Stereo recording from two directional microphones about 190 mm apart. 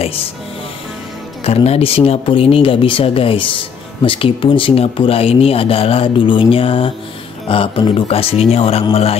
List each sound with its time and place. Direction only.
1.4 s speech: 30° left (ahead or behind)